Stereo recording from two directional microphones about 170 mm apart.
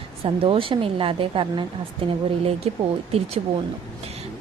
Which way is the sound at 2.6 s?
35° right (ahead or behind).